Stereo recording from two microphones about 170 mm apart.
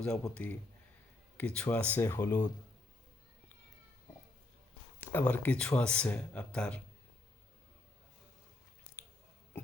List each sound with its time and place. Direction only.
0.0 s speech: 10° left (ahead or behind)
5.1 s speech: 10° left (ahead or behind)